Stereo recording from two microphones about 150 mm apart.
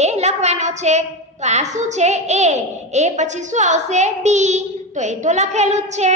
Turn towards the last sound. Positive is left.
turn(degrees=-50)  # may be behind; listen again after turning